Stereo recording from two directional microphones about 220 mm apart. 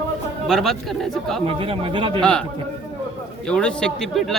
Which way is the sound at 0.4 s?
Centre (ahead or behind).